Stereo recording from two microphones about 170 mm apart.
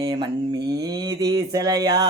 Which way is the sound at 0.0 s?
25° right (ahead or behind).